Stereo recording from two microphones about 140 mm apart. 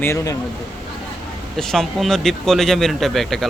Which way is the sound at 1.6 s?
5° left (ahead or behind).